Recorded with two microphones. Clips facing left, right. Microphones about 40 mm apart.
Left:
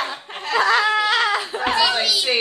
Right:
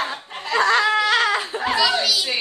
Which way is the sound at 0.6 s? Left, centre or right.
Centre.